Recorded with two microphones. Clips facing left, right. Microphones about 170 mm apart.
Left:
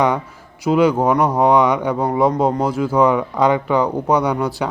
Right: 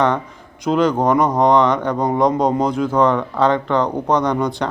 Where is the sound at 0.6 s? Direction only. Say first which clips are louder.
Left 1 dB; 10° left (ahead or behind).